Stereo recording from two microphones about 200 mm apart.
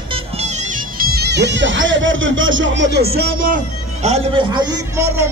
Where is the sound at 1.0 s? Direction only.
50° right (ahead or behind).